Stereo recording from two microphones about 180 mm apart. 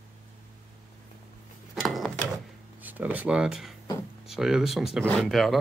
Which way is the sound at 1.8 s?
Centre (ahead or behind).